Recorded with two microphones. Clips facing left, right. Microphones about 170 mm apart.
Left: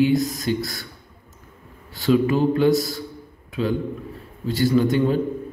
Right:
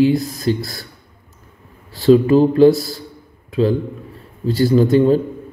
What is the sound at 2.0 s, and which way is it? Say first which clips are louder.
Speech: right 7 dB; 35° right (ahead or behind).